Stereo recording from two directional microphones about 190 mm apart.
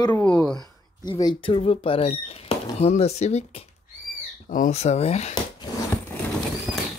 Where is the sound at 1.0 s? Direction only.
20° left (ahead or behind).